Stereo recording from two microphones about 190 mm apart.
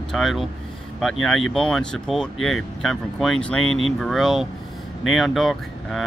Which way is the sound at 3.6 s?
90° left.